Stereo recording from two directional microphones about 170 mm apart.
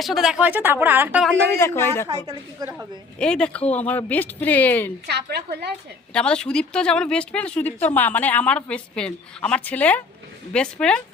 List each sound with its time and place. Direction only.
0.0 s speech: centre (ahead or behind)
1.5 s speech: 15° left (ahead or behind)
2.6 s speech: 25° right (ahead or behind)
3.2 s speech: 5° left (ahead or behind)
5.0 s a woman's voice: 75° right (ahead or behind)
6.1 s speech: 5° left (ahead or behind)